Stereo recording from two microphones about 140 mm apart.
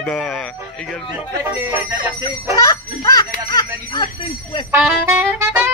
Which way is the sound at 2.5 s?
25° left (ahead or behind).